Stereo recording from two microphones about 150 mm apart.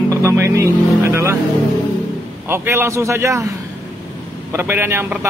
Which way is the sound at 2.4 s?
15° right (ahead or behind).